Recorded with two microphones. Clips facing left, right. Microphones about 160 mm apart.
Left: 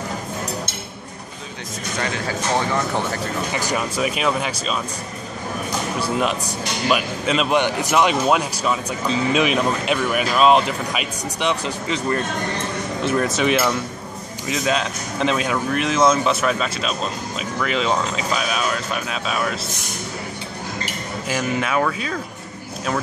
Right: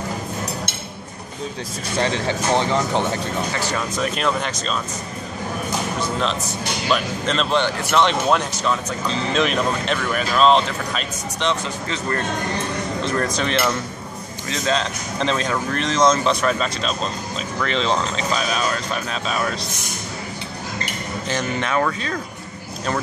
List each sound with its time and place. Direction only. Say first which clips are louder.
2.0 s speech: right 4 dB; 30° right (ahead or behind)
3.5 s speech: left 1 dB; 15° left (ahead or behind)
5.9 s speech: left 4 dB; 10° left (ahead or behind)
21.3 s speech: left 1 dB; 5° left (ahead or behind)